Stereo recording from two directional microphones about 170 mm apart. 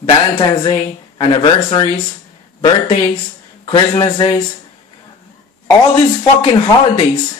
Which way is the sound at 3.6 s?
25° left (ahead or behind).